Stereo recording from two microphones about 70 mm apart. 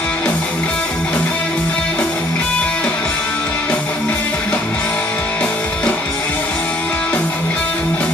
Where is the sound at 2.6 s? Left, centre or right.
Centre.